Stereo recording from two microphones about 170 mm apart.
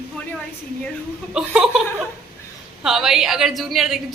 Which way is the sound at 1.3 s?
5° right (ahead or behind).